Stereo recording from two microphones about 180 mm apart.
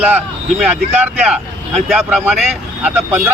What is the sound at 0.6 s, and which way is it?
Speech, 5° right (ahead or behind).